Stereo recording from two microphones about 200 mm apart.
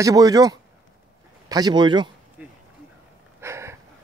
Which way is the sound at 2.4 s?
5° right (ahead or behind).